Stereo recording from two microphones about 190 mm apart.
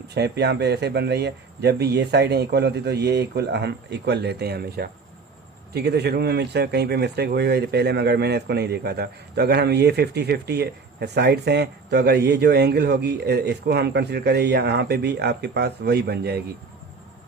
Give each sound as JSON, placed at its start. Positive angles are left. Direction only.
{"t": 0.1, "sound": "speech", "side_deg": -60}